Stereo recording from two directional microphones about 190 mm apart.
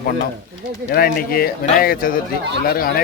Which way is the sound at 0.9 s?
50° left (ahead or behind).